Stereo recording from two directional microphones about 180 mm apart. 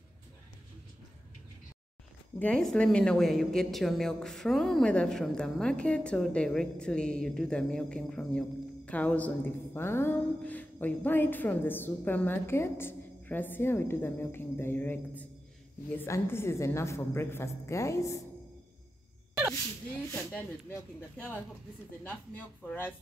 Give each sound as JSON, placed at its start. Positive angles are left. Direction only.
{"t": 2.3, "sound": "a woman's voice", "side_deg": 5}
{"t": 20.1, "sound": "a woman's voice", "side_deg": 10}
{"t": 22.0, "sound": "a woman's voice", "side_deg": 10}